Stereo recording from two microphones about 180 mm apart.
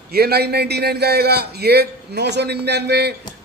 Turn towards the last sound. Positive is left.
turn(degrees=-65)  # may be behind; listen again after turning